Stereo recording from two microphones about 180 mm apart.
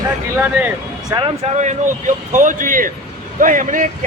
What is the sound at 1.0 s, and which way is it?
Speech, 25° right (ahead or behind).